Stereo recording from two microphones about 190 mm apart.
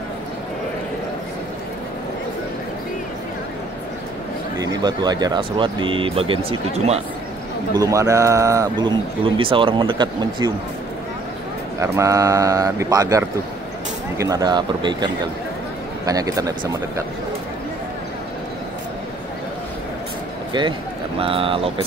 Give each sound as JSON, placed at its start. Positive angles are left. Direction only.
{"t": 4.6, "sound": "speech", "side_deg": -20}
{"t": 7.7, "sound": "speech", "side_deg": -20}
{"t": 11.8, "sound": "speech", "side_deg": -15}
{"t": 16.1, "sound": "speech", "side_deg": -20}
{"t": 21.2, "sound": "speech", "side_deg": -30}